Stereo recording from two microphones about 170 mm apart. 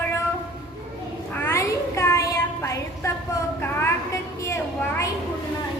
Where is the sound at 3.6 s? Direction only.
15° left (ahead or behind).